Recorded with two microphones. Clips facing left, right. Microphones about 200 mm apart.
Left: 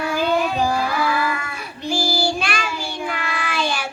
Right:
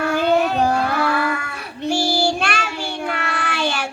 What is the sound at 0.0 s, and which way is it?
Child singing, 60° right (ahead or behind).